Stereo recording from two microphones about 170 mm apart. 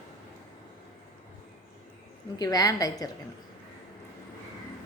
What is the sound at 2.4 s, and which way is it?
Speech, 20° left (ahead or behind).